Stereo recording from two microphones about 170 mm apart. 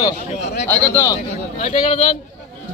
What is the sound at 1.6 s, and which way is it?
Speech, 40° left (ahead or behind).